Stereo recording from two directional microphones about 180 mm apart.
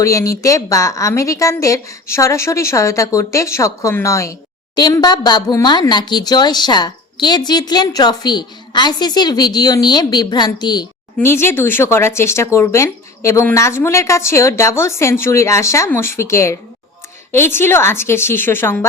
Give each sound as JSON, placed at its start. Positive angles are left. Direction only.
{"t": 0.0, "sound": "a woman's voice", "side_deg": 15}